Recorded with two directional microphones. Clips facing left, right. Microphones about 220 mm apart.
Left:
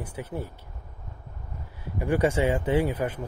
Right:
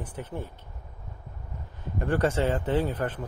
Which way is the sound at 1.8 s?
10° left (ahead or behind).